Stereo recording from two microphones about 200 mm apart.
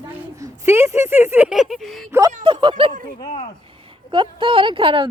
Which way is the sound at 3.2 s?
25° left (ahead or behind).